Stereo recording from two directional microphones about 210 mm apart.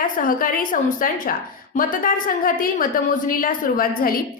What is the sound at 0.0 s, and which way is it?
A woman's voice, 40° left (ahead or behind).